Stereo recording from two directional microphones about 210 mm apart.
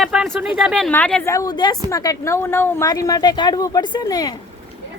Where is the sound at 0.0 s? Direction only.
Centre (ahead or behind); by 4.4 s 20° left (ahead or behind).